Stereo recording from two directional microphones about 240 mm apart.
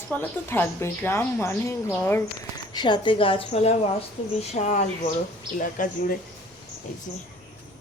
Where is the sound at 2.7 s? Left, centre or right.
Centre; by 6.2 s left.